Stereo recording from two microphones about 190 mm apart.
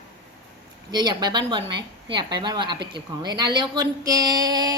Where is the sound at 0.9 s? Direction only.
25° right (ahead or behind).